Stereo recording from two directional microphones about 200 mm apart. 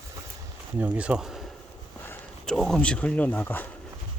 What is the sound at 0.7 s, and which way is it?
Speech, 10° right (ahead or behind).